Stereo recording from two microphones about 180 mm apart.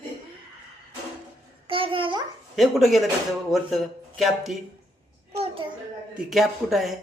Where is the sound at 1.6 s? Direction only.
30° right (ahead or behind).